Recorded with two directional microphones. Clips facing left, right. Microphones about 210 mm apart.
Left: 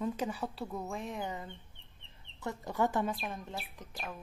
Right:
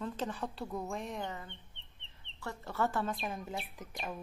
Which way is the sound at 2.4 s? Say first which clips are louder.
Left 2 dB; 15° left (ahead or behind).